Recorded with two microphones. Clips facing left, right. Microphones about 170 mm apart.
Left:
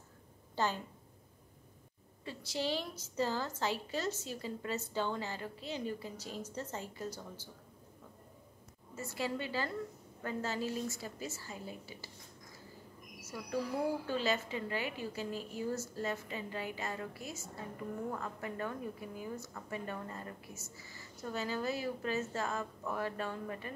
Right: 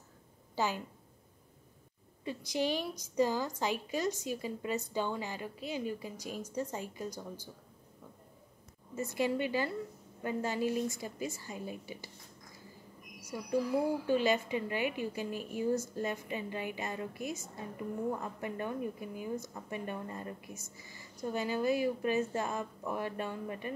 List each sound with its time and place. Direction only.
0.6 s a woman's voice: 10° right (ahead or behind)
2.2 s a woman's voice: 15° right (ahead or behind)
8.9 s a woman's voice: 20° right (ahead or behind)
13.2 s a woman's voice: 15° right (ahead or behind)